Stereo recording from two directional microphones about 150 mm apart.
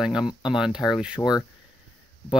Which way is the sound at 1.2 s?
25° left (ahead or behind).